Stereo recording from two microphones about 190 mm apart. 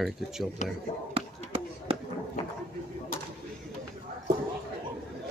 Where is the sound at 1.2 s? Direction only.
30° right (ahead or behind).